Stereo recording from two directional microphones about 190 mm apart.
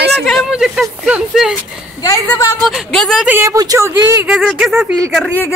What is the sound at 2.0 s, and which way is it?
Speech, 15° left (ahead or behind).